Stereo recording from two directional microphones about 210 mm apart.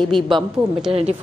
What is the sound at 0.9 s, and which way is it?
Speech, 30° right (ahead or behind).